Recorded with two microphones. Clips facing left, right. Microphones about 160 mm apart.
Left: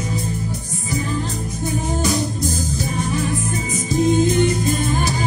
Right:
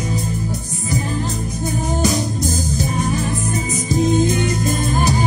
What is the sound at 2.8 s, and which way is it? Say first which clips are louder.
Music: even; 40° right (ahead or behind).